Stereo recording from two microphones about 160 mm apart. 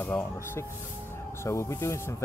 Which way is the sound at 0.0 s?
15° left (ahead or behind).